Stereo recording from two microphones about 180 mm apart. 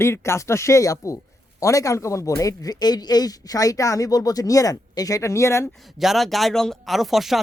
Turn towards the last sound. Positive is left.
turn(degrees=0)  # may be behind; listen again after turning